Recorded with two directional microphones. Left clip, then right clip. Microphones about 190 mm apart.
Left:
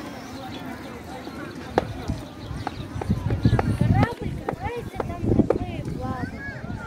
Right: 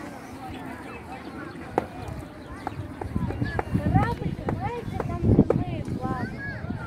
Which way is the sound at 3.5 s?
20° right (ahead or behind).